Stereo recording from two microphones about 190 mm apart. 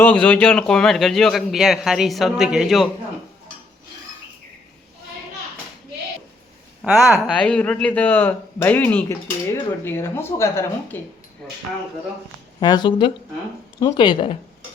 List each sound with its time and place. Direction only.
0.0 s a man's voice: 5° left (ahead or behind)
6.8 s speech: 5° right (ahead or behind)
12.5 s speech: 25° left (ahead or behind)